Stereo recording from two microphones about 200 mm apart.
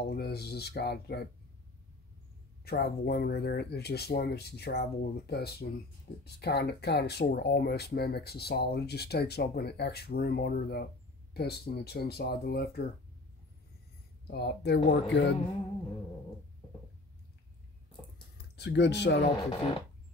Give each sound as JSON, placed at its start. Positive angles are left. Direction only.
{"t": 0.0, "sound": "speech", "side_deg": 55}
{"t": 2.6, "sound": "speech", "side_deg": 55}
{"t": 14.2, "sound": "speech", "side_deg": 55}
{"t": 18.6, "sound": "speech", "side_deg": 60}